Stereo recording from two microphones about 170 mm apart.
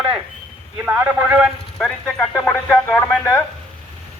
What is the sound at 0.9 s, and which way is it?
A man's voice, 10° right (ahead or behind).